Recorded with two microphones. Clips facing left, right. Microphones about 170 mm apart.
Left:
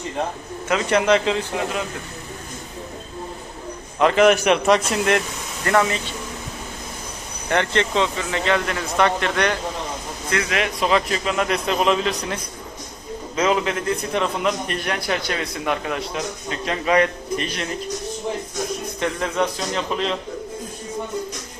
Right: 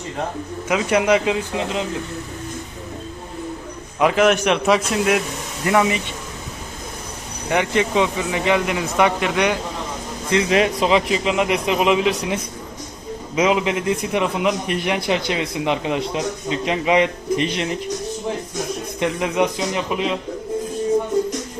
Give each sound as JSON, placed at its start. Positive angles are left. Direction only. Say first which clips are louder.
{"t": 0.7, "sound": "a man's voice", "louder": "right 1 dB", "side_deg": -10}
{"t": 4.0, "sound": "a man's voice", "louder": "left 1 dB", "side_deg": 0}
{"t": 7.5, "sound": "a man's voice", "louder": "right 2 dB", "side_deg": -10}
{"t": 10.2, "sound": "a man's voice", "louder": "right 6 dB", "side_deg": -25}
{"t": 18.9, "sound": "a man's voice", "louder": "right 3 dB", "side_deg": -15}